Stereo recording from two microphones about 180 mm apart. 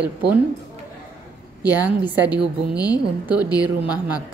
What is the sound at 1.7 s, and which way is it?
Speech, 10° right (ahead or behind).